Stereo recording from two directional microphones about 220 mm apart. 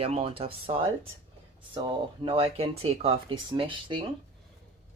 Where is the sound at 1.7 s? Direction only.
25° right (ahead or behind).